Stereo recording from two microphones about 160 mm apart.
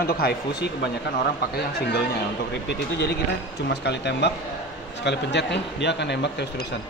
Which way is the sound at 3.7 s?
90° left.